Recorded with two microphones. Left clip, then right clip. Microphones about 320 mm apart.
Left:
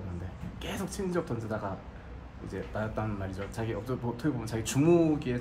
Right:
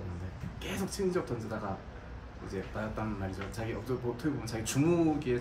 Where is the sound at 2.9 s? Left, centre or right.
Centre.